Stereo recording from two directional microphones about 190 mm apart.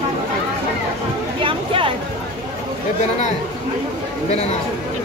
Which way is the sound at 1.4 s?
30° right (ahead or behind).